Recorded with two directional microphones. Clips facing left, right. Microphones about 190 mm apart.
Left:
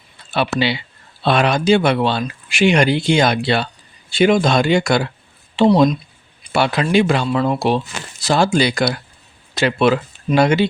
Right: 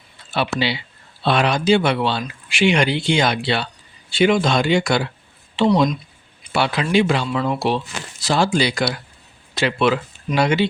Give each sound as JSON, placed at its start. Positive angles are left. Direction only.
{"t": 0.3, "sound": "speech", "side_deg": 55}